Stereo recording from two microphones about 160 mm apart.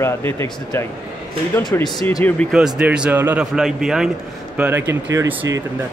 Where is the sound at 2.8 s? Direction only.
5° right (ahead or behind).